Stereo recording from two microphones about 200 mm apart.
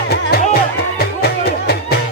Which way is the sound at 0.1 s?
50° left (ahead or behind).